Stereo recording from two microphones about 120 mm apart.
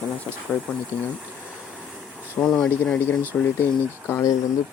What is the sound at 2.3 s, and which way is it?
Speech, 5° left (ahead or behind).